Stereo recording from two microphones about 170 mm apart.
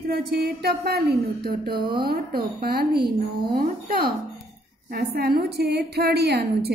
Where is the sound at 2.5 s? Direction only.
65° right (ahead or behind).